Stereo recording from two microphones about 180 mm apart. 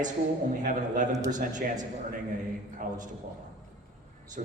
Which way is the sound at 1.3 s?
45° right (ahead or behind).